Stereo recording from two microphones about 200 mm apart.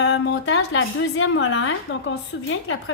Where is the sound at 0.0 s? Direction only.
65° left (ahead or behind).